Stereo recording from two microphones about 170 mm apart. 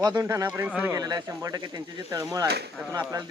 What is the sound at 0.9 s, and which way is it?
Speech, 20° right (ahead or behind).